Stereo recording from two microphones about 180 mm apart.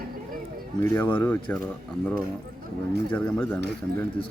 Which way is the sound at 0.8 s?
10° left (ahead or behind).